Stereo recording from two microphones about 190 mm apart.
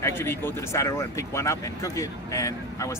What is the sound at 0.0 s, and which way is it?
Speech, 10° left (ahead or behind).